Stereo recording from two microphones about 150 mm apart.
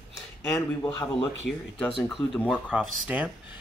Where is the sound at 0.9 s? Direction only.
25° left (ahead or behind).